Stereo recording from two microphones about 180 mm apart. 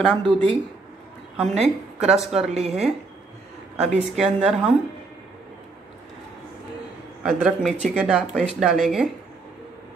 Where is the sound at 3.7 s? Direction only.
Centre (ahead or behind).